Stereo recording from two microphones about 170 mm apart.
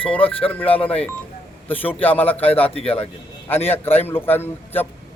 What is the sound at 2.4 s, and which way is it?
Speech, 35° left (ahead or behind).